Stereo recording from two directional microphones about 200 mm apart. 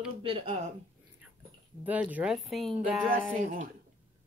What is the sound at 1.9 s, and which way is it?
Speech, 10° right (ahead or behind).